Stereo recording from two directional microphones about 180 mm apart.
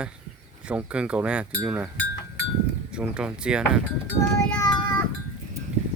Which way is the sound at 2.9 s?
5° right (ahead or behind).